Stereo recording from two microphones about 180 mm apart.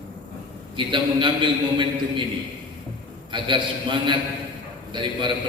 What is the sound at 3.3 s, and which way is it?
A man's voice, 25° right (ahead or behind).